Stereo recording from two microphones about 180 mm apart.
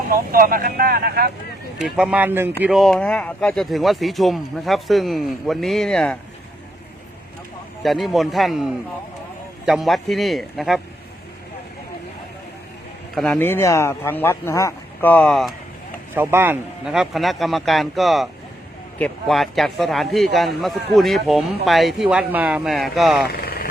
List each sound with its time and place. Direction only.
0.1 s speech: 50° right (ahead or behind)
1.8 s speech: 5° right (ahead or behind)
2.6 s speech: centre (ahead or behind)
7.8 s speech: centre (ahead or behind)
13.1 s speech: 5° left (ahead or behind)
16.1 s speech: 10° right (ahead or behind)
23.4 s vehicle: 55° left (ahead or behind)